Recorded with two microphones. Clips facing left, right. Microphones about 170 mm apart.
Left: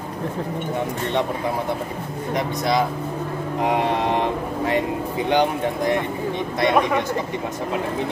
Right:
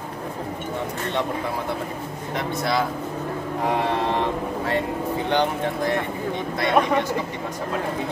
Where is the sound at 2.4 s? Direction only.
20° left (ahead or behind).